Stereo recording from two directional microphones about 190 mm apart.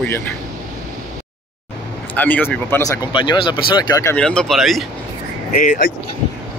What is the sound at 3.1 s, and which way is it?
Speech, 25° left (ahead or behind).